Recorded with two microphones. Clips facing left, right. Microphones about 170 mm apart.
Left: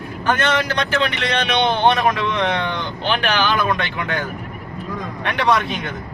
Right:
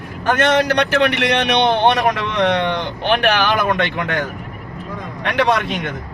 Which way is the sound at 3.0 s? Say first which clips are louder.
Right 3 dB; 65° right (ahead or behind).